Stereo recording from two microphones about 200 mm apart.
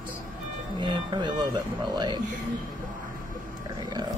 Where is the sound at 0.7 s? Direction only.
25° right (ahead or behind).